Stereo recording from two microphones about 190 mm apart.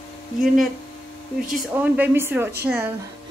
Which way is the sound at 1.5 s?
10° right (ahead or behind).